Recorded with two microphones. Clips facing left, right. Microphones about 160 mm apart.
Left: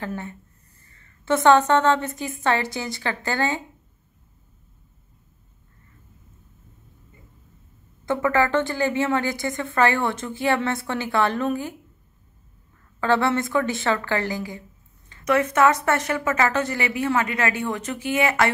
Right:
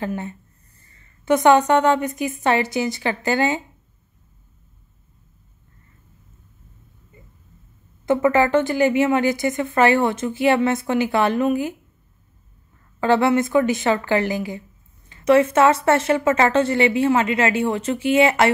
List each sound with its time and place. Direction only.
0.0 s a woman's voice: 20° right (ahead or behind)
8.0 s speech: 20° right (ahead or behind)
13.0 s a woman's voice: 15° right (ahead or behind)